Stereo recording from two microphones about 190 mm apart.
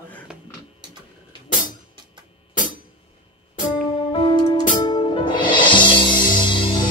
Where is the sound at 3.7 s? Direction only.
25° left (ahead or behind).